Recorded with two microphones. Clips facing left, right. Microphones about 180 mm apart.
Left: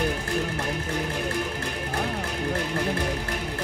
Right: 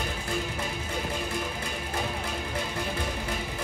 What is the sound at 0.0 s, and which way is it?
Music, 65° left (ahead or behind).